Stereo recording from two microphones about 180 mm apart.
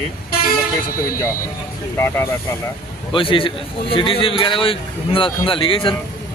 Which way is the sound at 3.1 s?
30° left (ahead or behind).